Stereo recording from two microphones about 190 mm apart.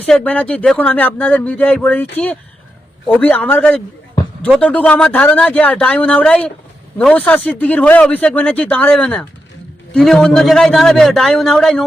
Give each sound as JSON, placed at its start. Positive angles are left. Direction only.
{"t": 0.0, "sound": "a man's voice", "side_deg": 10}